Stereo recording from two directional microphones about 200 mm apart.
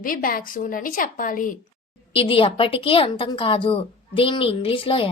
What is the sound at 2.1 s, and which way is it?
A woman's voice, 25° left (ahead or behind).